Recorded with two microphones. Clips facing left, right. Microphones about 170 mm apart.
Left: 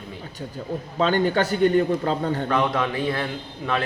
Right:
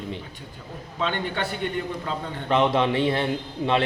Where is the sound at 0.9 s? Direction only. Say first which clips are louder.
Left 7 dB; 40° left (ahead or behind).